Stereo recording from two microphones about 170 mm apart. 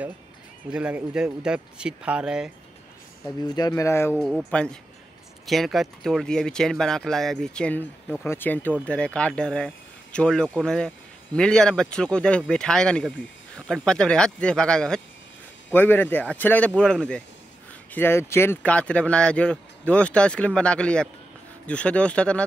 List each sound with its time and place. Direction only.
0.7 s speech: 5° right (ahead or behind)
3.4 s speech: 20° left (ahead or behind)
4.2 s speech: centre (ahead or behind)